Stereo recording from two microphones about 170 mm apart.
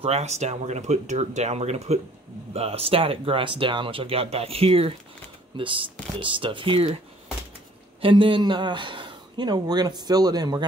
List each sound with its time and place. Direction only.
0.0 s speech: 40° right (ahead or behind)
8.0 s speech: 30° right (ahead or behind)